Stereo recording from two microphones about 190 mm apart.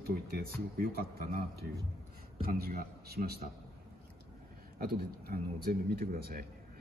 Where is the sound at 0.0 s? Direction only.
55° right (ahead or behind).